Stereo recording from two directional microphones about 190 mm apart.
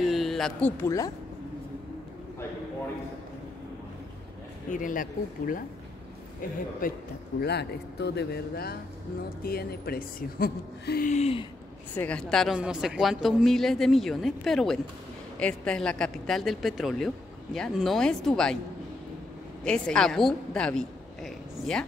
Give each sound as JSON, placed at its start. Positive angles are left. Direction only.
{"t": 0.1, "sound": "speech", "side_deg": 0}
{"t": 4.6, "sound": "a woman's voice", "side_deg": 45}
{"t": 6.8, "sound": "a woman's voice", "side_deg": 45}
{"t": 7.4, "sound": "a woman's voice", "side_deg": 60}
{"t": 11.9, "sound": "a woman's voice", "side_deg": 10}
{"t": 19.6, "sound": "a woman's voice", "side_deg": 5}